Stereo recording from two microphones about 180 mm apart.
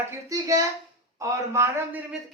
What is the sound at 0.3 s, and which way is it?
A man's voice, 20° right (ahead or behind).